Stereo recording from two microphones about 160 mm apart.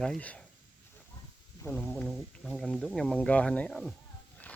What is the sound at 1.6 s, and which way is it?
Speech, 10° left (ahead or behind).